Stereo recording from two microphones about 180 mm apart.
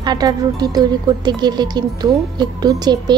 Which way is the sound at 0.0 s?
20° right (ahead or behind).